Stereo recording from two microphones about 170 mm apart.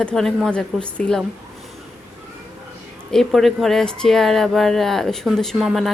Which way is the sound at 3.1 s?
Centre (ahead or behind).